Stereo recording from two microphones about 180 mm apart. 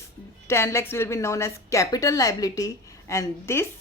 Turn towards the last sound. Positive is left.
turn(degrees=15)  # may be behind; listen again after turning